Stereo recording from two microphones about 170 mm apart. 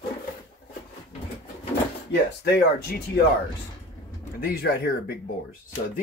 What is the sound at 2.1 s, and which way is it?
Speech, 70° left (ahead or behind).